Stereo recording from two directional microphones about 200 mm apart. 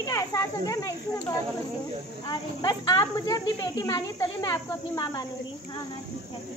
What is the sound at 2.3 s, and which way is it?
Speech, 20° left (ahead or behind).